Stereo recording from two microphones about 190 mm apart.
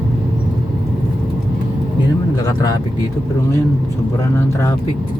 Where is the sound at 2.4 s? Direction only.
20° left (ahead or behind).